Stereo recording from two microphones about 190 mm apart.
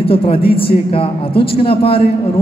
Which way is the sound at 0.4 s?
55° left (ahead or behind).